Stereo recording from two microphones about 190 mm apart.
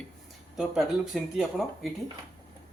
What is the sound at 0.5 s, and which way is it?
Speech, centre (ahead or behind).